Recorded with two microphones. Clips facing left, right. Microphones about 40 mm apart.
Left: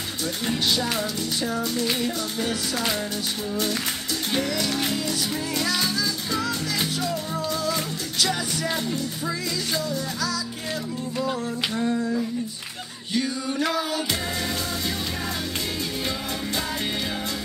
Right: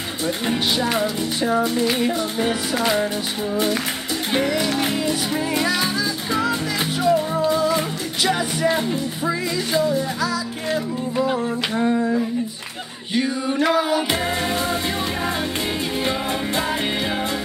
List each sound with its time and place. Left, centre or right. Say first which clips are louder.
0.5 s music: right 3 dB; right
4.3 s music: right 5 dB; right
7.0 s music: right 9 dB; right